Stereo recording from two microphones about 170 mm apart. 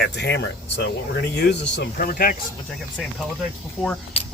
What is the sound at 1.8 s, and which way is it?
Speech, 60° left (ahead or behind).